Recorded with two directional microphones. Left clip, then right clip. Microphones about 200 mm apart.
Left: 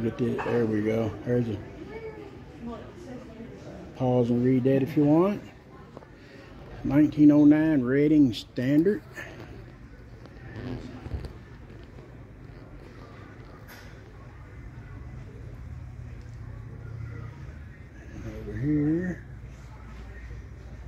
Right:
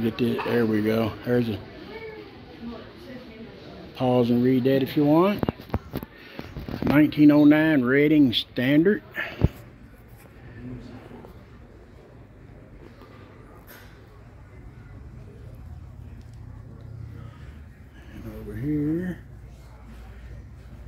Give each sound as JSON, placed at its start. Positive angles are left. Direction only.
{"t": 0.0, "sound": "speech", "side_deg": -5}
{"t": 3.9, "sound": "speech", "side_deg": -5}
{"t": 6.9, "sound": "speech", "side_deg": -10}
{"t": 18.5, "sound": "a sound", "side_deg": 0}